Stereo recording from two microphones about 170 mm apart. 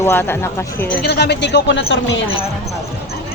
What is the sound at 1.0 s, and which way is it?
Speech, 80° left.